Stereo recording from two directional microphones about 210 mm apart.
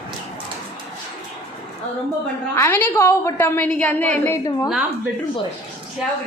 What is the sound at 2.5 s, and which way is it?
A woman's voice, 10° left (ahead or behind).